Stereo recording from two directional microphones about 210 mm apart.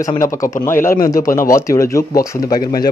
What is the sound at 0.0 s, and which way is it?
Speech, 15° left (ahead or behind).